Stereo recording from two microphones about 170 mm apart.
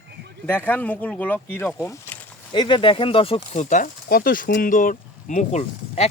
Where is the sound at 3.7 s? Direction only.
55° left (ahead or behind).